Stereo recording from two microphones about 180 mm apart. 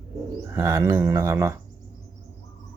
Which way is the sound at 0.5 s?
15° right (ahead or behind).